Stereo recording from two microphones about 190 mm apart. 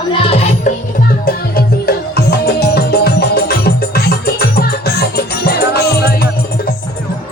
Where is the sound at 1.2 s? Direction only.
55° left (ahead or behind).